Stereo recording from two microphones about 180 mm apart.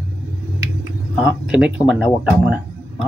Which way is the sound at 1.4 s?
5° right (ahead or behind).